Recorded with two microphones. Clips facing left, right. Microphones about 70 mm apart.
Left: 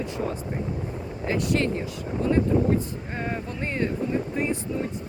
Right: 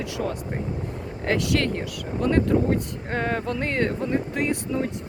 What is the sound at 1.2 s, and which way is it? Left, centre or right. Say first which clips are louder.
Speech: right 1 dB; right.